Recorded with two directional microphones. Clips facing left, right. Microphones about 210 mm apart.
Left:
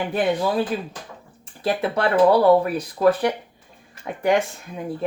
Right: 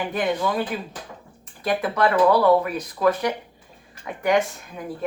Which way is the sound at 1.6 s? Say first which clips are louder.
Even; 30° left (ahead or behind).